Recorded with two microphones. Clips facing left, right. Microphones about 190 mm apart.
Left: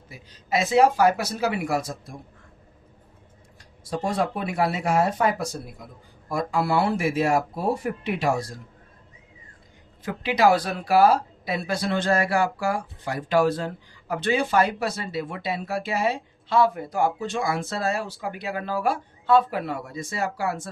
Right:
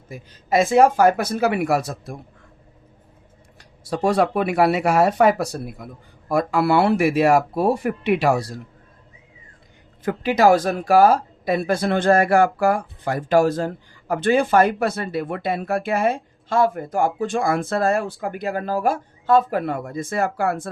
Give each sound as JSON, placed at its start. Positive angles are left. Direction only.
{"t": 0.1, "sound": "speech", "side_deg": -50}
{"t": 3.6, "sound": "speech", "side_deg": -70}
{"t": 10.0, "sound": "speech", "side_deg": -50}